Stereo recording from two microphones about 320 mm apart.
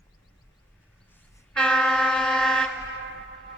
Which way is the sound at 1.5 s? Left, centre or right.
Centre.